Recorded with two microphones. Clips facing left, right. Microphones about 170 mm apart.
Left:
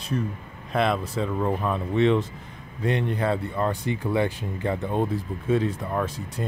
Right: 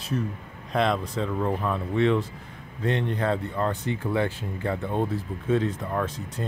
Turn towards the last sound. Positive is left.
turn(degrees=10)  # may be behind; listen again after turning